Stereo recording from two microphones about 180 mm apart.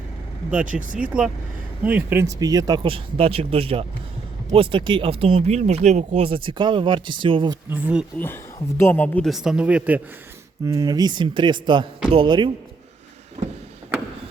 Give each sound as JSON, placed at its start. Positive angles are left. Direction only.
{"t": 0.6, "sound": "speech", "side_deg": -45}
{"t": 0.9, "sound": "a man's voice", "side_deg": -5}
{"t": 7.7, "sound": "speech", "side_deg": -5}
{"t": 8.8, "sound": "a man's voice", "side_deg": 10}
{"t": 10.7, "sound": "speech", "side_deg": -20}
{"t": 13.4, "sound": "a sound", "side_deg": -40}